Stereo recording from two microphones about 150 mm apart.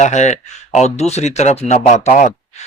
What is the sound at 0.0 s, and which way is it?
Speech, 50° left (ahead or behind).